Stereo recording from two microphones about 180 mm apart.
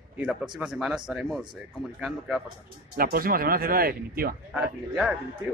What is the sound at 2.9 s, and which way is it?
Speech, 55° right (ahead or behind).